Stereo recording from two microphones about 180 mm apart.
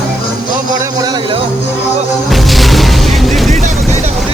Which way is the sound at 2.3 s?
Centre (ahead or behind).